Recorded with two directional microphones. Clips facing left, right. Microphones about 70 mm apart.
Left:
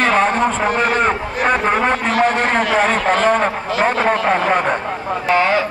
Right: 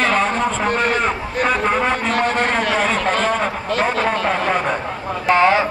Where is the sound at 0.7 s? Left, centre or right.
Centre.